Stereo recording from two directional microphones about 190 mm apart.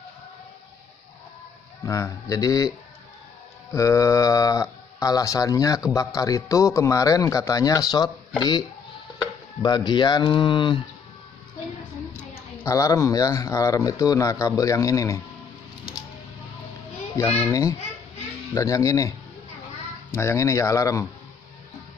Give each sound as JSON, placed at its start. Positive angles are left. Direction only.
{"t": 1.9, "sound": "speech", "side_deg": 15}
{"t": 3.7, "sound": "speech", "side_deg": 15}
{"t": 12.6, "sound": "speech", "side_deg": 15}
{"t": 17.2, "sound": "speech", "side_deg": 10}